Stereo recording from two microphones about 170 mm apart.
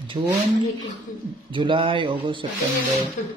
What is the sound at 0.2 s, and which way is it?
Speech, 25° right (ahead or behind).